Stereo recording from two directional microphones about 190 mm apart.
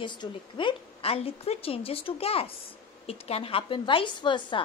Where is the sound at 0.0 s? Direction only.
25° left (ahead or behind).